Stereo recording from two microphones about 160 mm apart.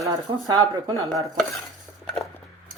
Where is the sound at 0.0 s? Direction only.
25° right (ahead or behind).